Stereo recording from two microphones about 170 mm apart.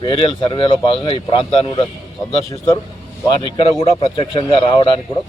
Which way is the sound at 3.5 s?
30° left (ahead or behind).